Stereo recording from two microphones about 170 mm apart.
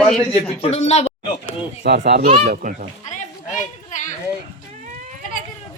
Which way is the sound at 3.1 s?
50° left (ahead or behind).